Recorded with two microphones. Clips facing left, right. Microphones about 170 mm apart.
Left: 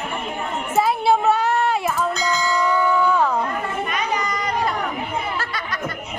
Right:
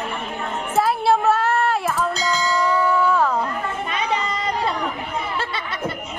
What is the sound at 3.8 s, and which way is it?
Children playing, 30° right (ahead or behind).